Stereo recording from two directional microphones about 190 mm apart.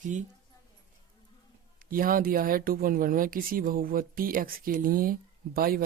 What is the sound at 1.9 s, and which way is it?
Speech, 50° right (ahead or behind).